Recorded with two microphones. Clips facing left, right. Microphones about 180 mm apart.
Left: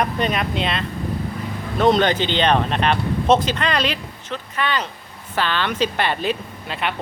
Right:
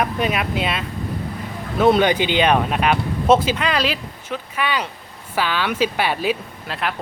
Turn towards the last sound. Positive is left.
turn(degrees=0)  # may be behind; listen again after turning